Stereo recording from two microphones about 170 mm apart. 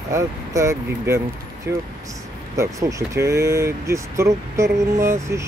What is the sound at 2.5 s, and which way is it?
Speech, 20° right (ahead or behind).